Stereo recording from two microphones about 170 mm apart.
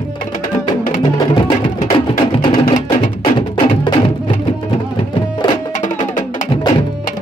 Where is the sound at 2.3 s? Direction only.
30° left (ahead or behind).